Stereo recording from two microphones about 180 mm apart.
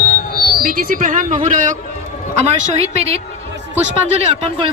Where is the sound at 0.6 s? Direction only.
55° right (ahead or behind).